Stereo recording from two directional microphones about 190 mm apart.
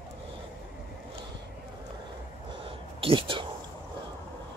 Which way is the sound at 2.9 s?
30° right (ahead or behind).